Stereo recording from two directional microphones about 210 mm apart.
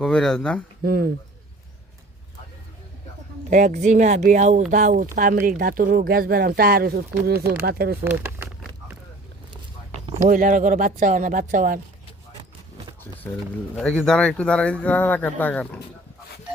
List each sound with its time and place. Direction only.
0.0 s speech: 5° left (ahead or behind)
0.8 s speech: 45° right (ahead or behind)
3.5 s speech: 35° right (ahead or behind)
8.0 s a sound: 10° right (ahead or behind)
10.1 s speech: 35° right (ahead or behind)
13.7 s speech: centre (ahead or behind)